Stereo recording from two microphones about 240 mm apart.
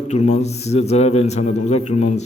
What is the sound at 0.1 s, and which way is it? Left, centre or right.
A man's voice, left.